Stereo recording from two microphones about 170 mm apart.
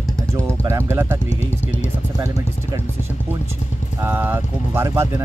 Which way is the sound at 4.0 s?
10° right (ahead or behind).